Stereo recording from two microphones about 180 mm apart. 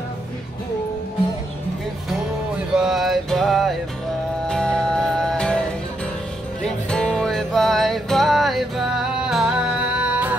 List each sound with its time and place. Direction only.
2.7 s music: 5° right (ahead or behind)
6.6 s music: 5° left (ahead or behind)